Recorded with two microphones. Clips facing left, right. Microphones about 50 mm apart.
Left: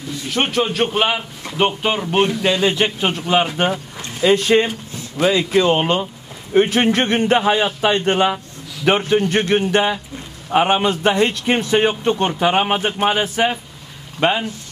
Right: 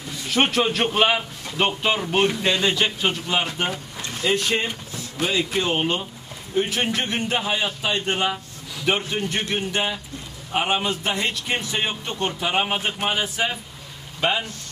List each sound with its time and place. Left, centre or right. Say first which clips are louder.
0.3 s a man's voice: left 1 dB; centre
1.6 s speech: left 4 dB; centre
3.0 s a man's voice: left 6 dB; left
5.6 s a man's voice: left 7 dB; left
8.8 s a man's voice: left 8 dB; left
10.5 s a man's voice: left 7 dB; left